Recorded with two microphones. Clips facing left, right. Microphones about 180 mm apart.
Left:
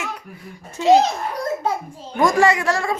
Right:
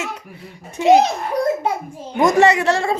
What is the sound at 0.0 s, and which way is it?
A woman's voice, 20° right (ahead or behind).